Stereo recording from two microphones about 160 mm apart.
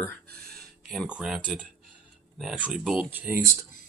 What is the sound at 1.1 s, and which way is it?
Speech, 5° right (ahead or behind).